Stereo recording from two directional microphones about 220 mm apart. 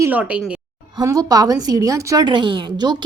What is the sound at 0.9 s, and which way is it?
A woman's voice, 15° right (ahead or behind).